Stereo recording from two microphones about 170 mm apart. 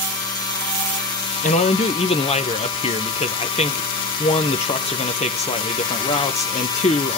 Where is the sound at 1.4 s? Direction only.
45° left (ahead or behind).